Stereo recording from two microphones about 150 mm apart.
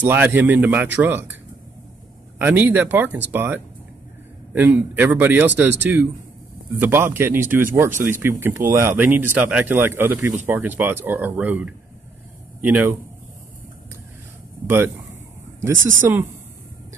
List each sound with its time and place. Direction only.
0.0 s speech: 10° right (ahead or behind)
2.3 s speech: 15° right (ahead or behind)
15.6 s speech: 15° right (ahead or behind)